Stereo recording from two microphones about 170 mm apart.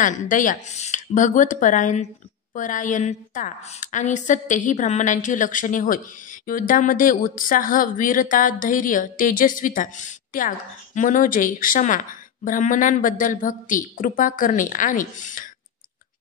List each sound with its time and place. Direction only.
0.0 s a woman's voice: 50° left (ahead or behind)